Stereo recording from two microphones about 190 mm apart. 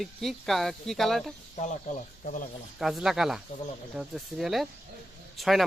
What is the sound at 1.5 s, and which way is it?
Speech, 40° left (ahead or behind).